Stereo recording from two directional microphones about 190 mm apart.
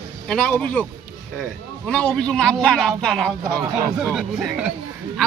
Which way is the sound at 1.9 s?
5° left (ahead or behind).